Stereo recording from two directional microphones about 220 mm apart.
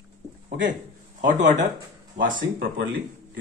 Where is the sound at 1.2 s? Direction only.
35° right (ahead or behind).